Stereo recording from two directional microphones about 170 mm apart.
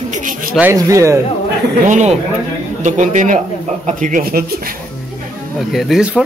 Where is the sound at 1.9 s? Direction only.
45° right (ahead or behind); by 4.7 s 60° right (ahead or behind).